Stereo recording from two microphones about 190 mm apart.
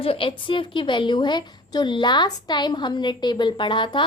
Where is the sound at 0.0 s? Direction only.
30° left (ahead or behind).